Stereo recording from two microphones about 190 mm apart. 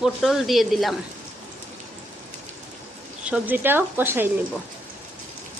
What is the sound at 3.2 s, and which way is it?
Speech, 10° right (ahead or behind).